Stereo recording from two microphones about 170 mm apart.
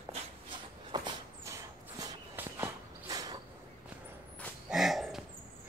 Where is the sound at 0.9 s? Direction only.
20° right (ahead or behind).